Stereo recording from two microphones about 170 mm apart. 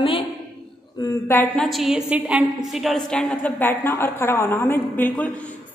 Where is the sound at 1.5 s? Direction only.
Centre (ahead or behind).